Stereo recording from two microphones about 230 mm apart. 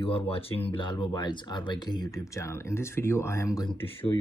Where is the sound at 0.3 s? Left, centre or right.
Left.